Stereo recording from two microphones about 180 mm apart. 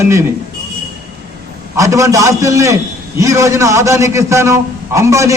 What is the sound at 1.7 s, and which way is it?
A man's voice, 15° right (ahead or behind).